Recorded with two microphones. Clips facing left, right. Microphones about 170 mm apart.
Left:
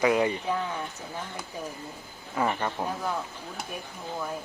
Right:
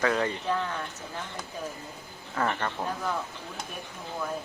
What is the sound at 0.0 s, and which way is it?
Speech, 15° left (ahead or behind).